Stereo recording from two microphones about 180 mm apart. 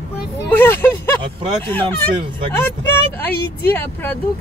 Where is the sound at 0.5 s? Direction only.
10° left (ahead or behind).